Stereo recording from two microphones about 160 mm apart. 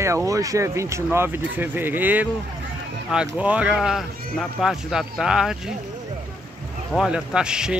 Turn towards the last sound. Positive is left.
turn(degrees=-5)  # may be behind; listen again after turning